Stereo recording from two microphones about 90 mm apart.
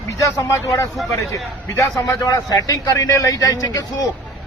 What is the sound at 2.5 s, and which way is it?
Speech, 45° left (ahead or behind).